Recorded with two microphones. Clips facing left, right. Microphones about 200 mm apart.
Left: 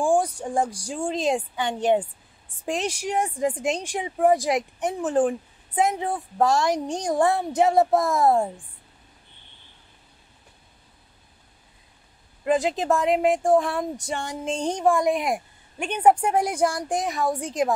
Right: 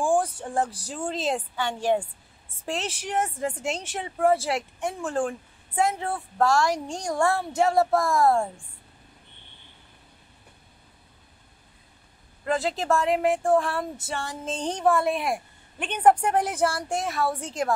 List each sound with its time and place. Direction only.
0.0 s a woman's voice: 15° left (ahead or behind)
12.4 s a woman's voice: 15° left (ahead or behind)